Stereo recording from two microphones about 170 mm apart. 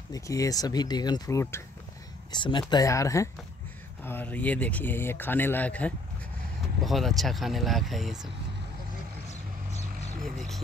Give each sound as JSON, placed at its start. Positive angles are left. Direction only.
{"t": 0.1, "sound": "speech", "side_deg": 20}
{"t": 2.3, "sound": "speech", "side_deg": 25}
{"t": 9.3, "sound": "vehicle", "side_deg": 40}
{"t": 10.2, "sound": "speech", "side_deg": 0}